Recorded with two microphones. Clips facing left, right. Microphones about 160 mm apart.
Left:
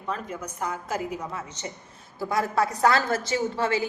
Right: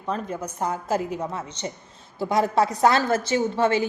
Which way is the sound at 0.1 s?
30° right (ahead or behind).